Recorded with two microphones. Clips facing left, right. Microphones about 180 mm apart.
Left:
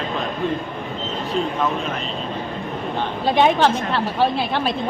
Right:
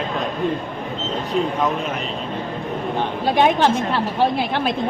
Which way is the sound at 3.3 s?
10° right (ahead or behind).